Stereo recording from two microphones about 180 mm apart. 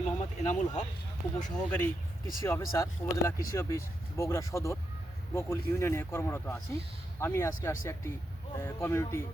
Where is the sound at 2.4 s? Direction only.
15° left (ahead or behind).